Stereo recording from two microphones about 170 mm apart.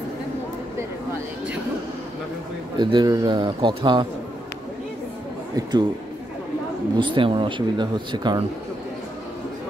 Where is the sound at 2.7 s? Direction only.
25° right (ahead or behind).